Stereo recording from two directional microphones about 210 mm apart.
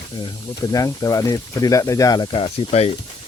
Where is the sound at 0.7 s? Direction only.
15° left (ahead or behind).